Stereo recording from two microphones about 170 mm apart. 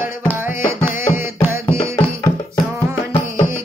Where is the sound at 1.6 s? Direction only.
20° left (ahead or behind).